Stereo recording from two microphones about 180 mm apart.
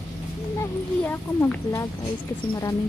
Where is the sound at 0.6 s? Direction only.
15° left (ahead or behind).